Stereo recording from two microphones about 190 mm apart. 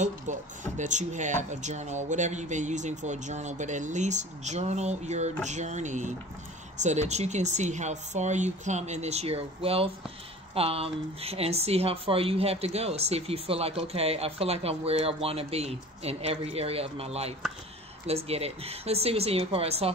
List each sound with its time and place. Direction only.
0.0 s speech: 40° right (ahead or behind)